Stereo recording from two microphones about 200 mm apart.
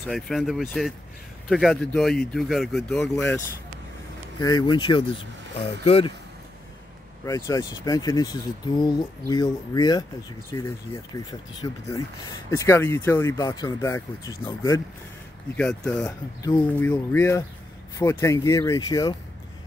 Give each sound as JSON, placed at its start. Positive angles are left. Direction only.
{"t": 0.0, "sound": "speech", "side_deg": 0}
{"t": 4.4, "sound": "speech", "side_deg": 20}
{"t": 7.2, "sound": "speech", "side_deg": 15}
{"t": 15.5, "sound": "speech", "side_deg": 5}